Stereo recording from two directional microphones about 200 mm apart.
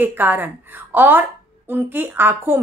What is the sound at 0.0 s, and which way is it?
Speech, 10° right (ahead or behind).